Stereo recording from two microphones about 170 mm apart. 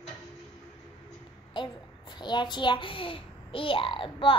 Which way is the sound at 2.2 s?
25° left (ahead or behind).